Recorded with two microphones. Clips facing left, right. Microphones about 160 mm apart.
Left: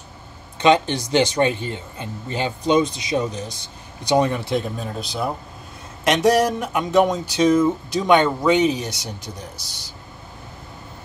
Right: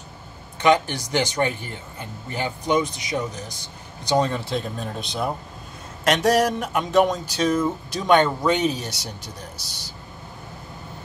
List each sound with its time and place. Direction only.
0.6 s speech: 20° left (ahead or behind)